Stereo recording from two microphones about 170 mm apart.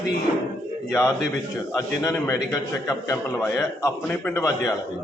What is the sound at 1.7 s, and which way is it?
A man's voice, 15° left (ahead or behind).